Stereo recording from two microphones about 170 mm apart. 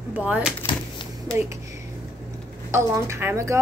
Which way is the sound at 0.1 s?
10° right (ahead or behind).